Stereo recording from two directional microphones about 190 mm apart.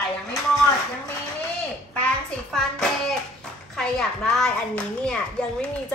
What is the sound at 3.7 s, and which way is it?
A woman's voice, 5° left (ahead or behind).